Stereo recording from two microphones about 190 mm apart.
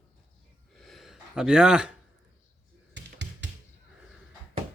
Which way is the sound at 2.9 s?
70° right (ahead or behind).